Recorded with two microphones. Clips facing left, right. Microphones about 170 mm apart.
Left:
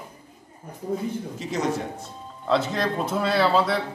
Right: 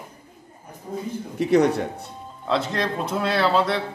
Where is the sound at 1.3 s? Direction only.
65° right (ahead or behind).